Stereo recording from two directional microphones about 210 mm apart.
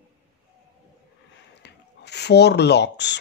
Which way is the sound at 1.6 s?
55° left (ahead or behind).